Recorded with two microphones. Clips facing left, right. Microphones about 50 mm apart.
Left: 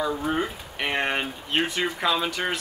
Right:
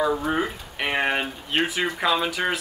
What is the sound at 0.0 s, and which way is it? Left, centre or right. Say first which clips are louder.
Speech: right 3 dB; centre.